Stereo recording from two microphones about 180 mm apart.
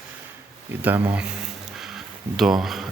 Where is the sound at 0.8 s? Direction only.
10° right (ahead or behind).